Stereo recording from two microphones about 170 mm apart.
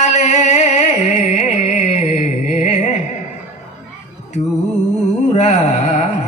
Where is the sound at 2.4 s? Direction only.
45° left (ahead or behind).